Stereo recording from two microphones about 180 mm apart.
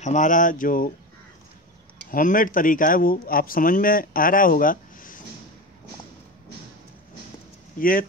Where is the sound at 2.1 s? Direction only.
50° left (ahead or behind).